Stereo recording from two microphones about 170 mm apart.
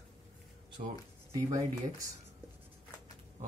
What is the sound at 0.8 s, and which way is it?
Speech, 50° right (ahead or behind).